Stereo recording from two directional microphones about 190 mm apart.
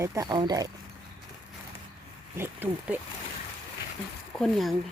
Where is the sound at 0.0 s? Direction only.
15° right (ahead or behind).